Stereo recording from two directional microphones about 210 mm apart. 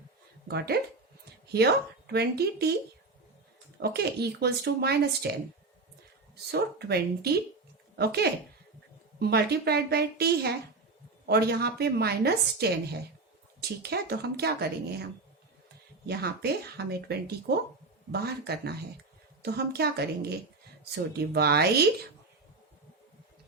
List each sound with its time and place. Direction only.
0.4 s speech: 50° right (ahead or behind)
1.2 s a sound: 50° right (ahead or behind)
2.1 s a woman's voice: 50° right (ahead or behind)
3.8 s a woman's voice: 50° right (ahead or behind)
16.0 s a woman's voice: 50° right (ahead or behind)